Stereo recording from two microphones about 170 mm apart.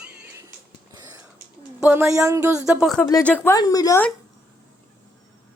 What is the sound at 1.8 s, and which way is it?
Speech, 15° right (ahead or behind).